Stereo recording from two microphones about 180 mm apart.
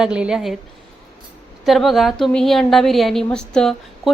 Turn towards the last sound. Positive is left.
turn(degrees=5)  # may be behind; listen again after turning